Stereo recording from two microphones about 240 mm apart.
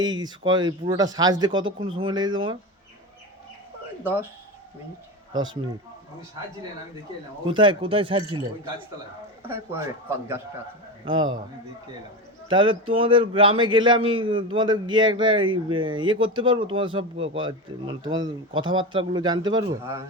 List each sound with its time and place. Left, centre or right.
0.0 s speech: centre
5.3 s speech: centre
7.4 s speech: centre
9.4 s speech: centre
11.0 s speech: centre
12.5 s speech: centre